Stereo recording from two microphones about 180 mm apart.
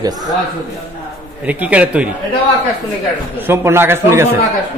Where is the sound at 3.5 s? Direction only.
15° right (ahead or behind).